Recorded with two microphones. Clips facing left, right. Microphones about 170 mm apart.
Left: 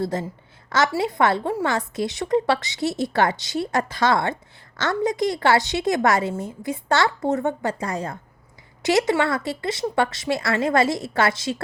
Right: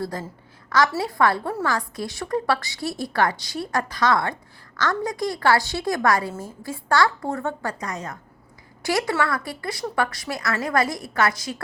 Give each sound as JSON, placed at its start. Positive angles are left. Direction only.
{"t": 0.0, "sound": "a woman's voice", "side_deg": 25}